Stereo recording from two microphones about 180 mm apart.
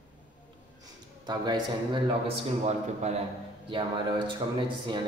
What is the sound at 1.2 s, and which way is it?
A man's voice, 25° right (ahead or behind).